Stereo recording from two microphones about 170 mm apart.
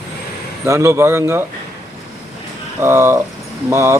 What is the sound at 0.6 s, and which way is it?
Speech, 15° right (ahead or behind).